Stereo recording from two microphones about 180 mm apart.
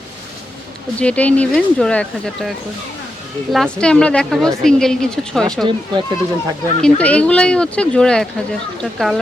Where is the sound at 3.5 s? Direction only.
5° left (ahead or behind).